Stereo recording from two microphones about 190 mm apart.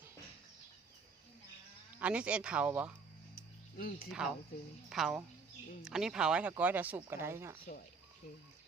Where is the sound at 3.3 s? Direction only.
50° left (ahead or behind).